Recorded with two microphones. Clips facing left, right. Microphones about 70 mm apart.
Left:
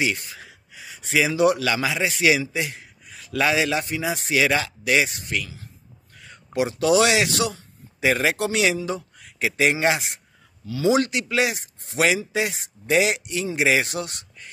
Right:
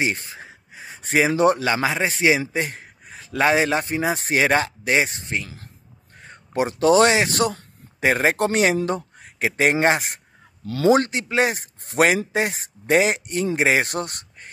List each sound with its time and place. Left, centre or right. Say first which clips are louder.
0.0 s speech: right 1 dB; right
6.1 s a sound: right 1 dB; right
6.8 s speech: right 3 dB; right
10.7 s speech: right 4 dB; right
11.0 s speech: right 1 dB; right